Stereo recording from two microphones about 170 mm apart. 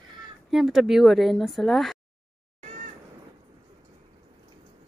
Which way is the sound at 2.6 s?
45° right (ahead or behind).